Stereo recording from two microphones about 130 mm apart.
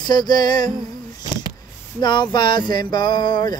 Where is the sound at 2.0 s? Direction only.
35° left (ahead or behind).